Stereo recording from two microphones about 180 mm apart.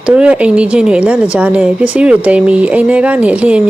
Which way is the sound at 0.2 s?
5° right (ahead or behind).